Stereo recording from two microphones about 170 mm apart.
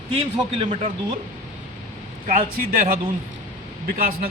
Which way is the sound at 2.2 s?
50° right (ahead or behind).